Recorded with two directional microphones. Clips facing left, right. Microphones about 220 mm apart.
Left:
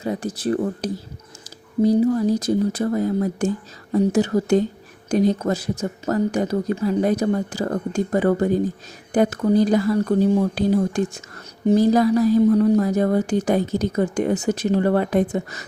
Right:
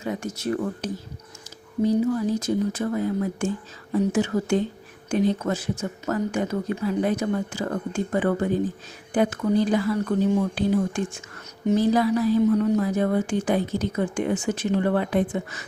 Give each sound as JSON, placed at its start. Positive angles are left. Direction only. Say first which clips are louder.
{"t": 0.0, "sound": "a woman's voice", "louder": "left 4 dB", "side_deg": 35}